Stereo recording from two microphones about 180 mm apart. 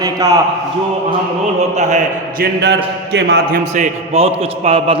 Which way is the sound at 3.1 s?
65° right (ahead or behind).